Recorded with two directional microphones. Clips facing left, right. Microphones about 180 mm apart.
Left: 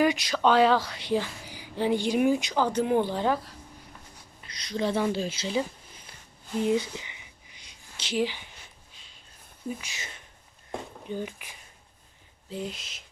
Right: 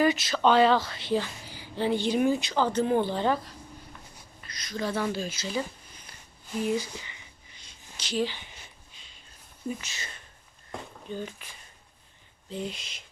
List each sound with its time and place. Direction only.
0.0 s speech: 15° left (ahead or behind)
4.7 s speech: 25° left (ahead or behind)
6.6 s a sound: 20° left (ahead or behind)
8.1 s speech: 10° left (ahead or behind)
8.4 s a sound: centre (ahead or behind)
9.8 s speech: 15° left (ahead or behind)
12.5 s speech: centre (ahead or behind)